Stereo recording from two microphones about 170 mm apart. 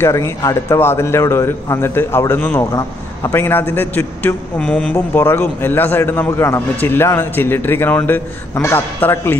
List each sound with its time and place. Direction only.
0.0 s a man's voice: 20° left (ahead or behind)